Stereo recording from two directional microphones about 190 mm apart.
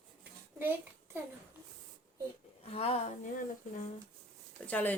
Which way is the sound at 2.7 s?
35° left (ahead or behind).